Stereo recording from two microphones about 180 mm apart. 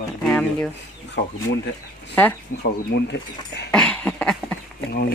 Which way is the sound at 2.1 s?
10° left (ahead or behind).